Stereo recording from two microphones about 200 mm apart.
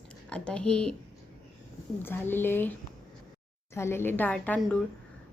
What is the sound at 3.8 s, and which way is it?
A woman's voice, 10° left (ahead or behind).